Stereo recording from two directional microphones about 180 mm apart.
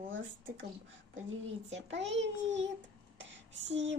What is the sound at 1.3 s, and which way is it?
Speech, 90° right.